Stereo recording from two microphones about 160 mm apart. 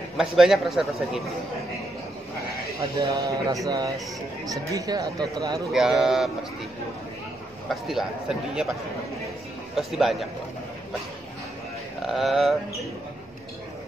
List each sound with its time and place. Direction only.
0.2 s a man's voice: centre (ahead or behind)
3.0 s speech: 20° right (ahead or behind)
5.7 s a man's voice: centre (ahead or behind)
7.6 s a man's voice: centre (ahead or behind)
9.8 s a man's voice: centre (ahead or behind)
12.1 s a man's voice: centre (ahead or behind)